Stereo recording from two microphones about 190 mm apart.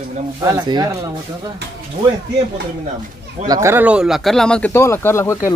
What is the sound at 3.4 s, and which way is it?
Speech, 15° right (ahead or behind).